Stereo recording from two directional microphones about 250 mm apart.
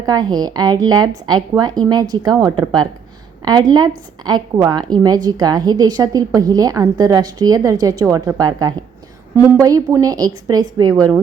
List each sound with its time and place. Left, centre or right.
0.0 s a woman's voice: centre
3.4 s a woman's voice: centre